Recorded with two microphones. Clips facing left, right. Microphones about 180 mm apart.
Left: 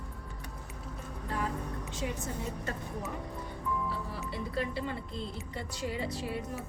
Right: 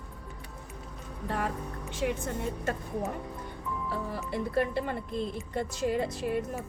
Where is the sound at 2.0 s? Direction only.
65° right (ahead or behind).